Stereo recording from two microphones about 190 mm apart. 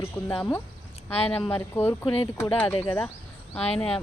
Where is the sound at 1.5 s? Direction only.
10° left (ahead or behind).